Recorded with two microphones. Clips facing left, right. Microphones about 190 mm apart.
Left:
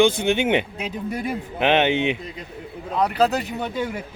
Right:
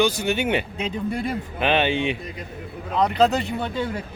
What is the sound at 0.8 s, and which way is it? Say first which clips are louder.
Speech: right 1 dB; 5° left (ahead or behind).